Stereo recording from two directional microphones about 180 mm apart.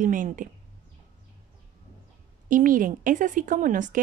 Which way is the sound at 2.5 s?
45° right (ahead or behind).